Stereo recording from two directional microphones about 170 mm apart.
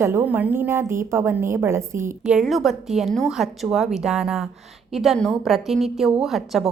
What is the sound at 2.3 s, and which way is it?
A woman's voice, centre (ahead or behind).